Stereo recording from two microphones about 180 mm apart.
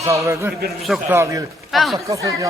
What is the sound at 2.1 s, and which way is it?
Speech, 15° right (ahead or behind).